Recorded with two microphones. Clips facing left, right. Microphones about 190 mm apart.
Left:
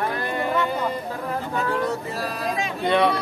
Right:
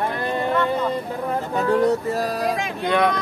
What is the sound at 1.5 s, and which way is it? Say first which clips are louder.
Speech: right 7 dB; 40° right (ahead or behind).